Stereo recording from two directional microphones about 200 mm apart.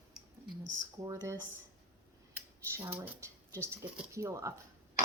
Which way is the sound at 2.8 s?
10° right (ahead or behind).